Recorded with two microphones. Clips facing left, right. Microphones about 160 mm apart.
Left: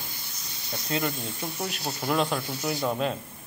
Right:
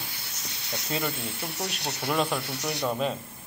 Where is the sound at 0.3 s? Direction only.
70° right (ahead or behind).